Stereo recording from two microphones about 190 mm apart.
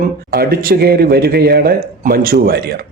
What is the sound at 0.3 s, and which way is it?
A man's voice, 50° right (ahead or behind).